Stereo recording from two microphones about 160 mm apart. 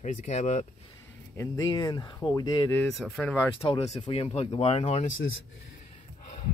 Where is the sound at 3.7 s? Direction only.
35° left (ahead or behind).